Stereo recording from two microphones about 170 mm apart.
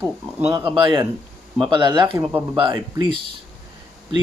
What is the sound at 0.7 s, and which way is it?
Speech, 30° right (ahead or behind).